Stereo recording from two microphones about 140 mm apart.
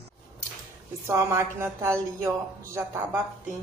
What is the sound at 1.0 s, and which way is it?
Speech, 20° right (ahead or behind).